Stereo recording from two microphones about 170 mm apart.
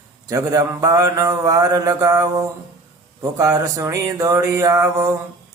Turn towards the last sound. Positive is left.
turn(degrees=-20)  # may be behind; listen again after turning